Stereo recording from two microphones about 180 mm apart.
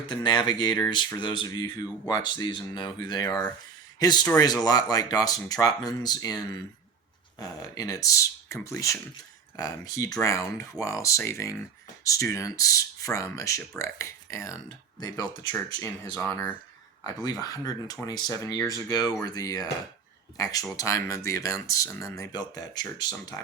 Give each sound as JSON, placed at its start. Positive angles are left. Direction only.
{"t": 0.0, "sound": "speech", "side_deg": 25}